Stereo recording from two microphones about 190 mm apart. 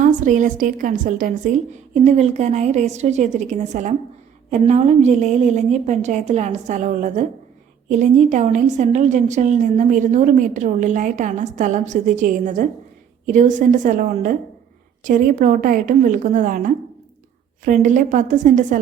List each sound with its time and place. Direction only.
0.0 s a woman's voice: 40° right (ahead or behind)